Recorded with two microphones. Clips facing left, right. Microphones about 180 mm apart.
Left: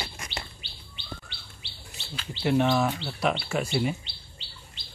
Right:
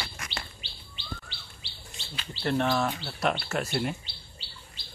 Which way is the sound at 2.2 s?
5° left (ahead or behind).